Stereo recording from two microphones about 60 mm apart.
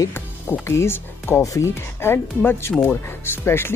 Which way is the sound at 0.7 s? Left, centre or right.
Left.